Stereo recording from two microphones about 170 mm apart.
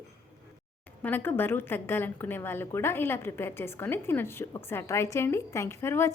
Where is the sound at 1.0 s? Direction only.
10° left (ahead or behind).